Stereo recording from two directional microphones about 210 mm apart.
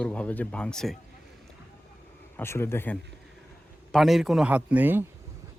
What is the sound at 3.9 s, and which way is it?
A man's voice, centre (ahead or behind).